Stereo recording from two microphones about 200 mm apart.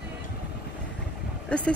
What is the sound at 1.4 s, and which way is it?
Speech, 5° left (ahead or behind).